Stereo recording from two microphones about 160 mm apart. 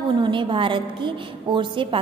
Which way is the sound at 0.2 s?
30° right (ahead or behind).